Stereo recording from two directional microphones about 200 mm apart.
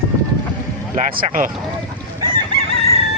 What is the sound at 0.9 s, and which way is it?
Speech, 40° right (ahead or behind).